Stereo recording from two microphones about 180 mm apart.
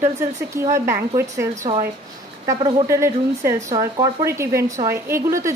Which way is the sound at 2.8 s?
15° right (ahead or behind).